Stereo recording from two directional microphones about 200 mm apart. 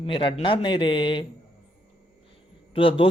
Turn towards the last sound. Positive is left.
turn(degrees=25)  # may be behind; listen again after turning